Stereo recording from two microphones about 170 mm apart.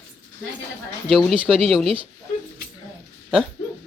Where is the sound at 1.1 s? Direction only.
Centre (ahead or behind).